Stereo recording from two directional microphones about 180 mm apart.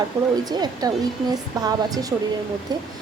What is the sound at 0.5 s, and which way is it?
A woman's voice, 20° right (ahead or behind).